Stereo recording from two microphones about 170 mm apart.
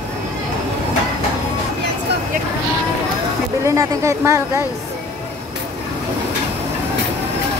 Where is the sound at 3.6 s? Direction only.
15° right (ahead or behind).